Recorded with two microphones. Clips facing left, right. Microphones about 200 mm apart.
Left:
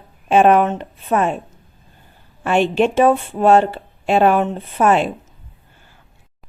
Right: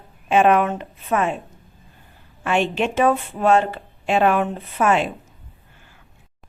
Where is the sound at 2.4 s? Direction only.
35° left (ahead or behind).